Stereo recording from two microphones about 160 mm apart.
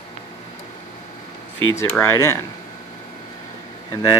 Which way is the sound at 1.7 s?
15° left (ahead or behind).